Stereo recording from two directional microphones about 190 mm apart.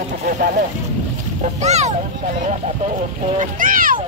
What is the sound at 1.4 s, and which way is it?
Speech, 35° right (ahead or behind).